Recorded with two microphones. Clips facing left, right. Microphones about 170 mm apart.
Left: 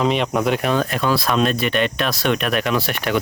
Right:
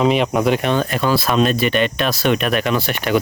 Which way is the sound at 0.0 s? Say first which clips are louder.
Right 3 dB; 5° right (ahead or behind).